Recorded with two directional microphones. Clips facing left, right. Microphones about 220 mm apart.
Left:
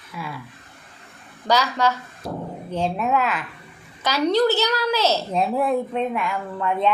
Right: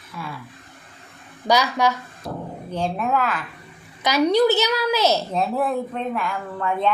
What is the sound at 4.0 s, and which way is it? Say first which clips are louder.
Speech: right 2 dB; 15° right (ahead or behind).